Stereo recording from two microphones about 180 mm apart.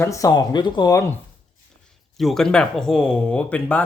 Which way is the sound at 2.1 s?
Centre (ahead or behind).